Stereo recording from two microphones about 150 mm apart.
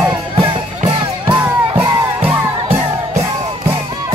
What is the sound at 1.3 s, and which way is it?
Music, 10° right (ahead or behind).